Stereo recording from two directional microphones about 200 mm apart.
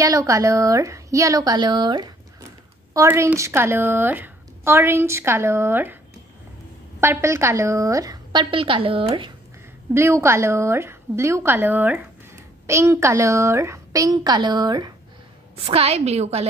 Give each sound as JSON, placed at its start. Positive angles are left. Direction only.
{"t": 0.0, "sound": "a woman's voice", "side_deg": -15}
{"t": 7.0, "sound": "a woman's voice", "side_deg": -15}
{"t": 9.9, "sound": "a woman's voice", "side_deg": -15}
{"t": 15.5, "sound": "a woman's voice", "side_deg": -30}